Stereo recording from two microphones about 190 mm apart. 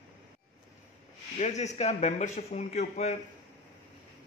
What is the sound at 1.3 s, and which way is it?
A man's voice, 35° left (ahead or behind).